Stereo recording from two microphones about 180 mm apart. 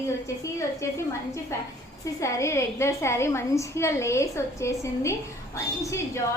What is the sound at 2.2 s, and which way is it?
A woman's voice, 15° left (ahead or behind).